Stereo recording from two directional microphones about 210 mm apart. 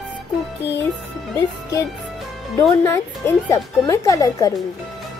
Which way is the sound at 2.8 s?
15° left (ahead or behind).